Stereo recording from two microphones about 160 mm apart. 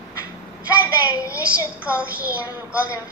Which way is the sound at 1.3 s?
10° right (ahead or behind).